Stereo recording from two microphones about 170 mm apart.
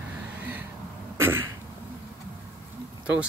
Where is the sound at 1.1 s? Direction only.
15° right (ahead or behind).